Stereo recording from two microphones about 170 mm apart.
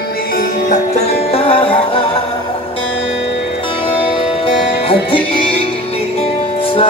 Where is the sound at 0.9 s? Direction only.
35° left (ahead or behind).